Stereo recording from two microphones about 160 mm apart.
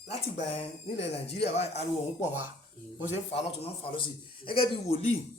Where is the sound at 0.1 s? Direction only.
40° left (ahead or behind).